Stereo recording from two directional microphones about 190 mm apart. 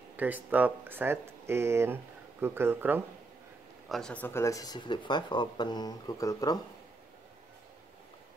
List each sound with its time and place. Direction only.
0.1 s speech: 10° right (ahead or behind)
3.9 s speech: 5° left (ahead or behind)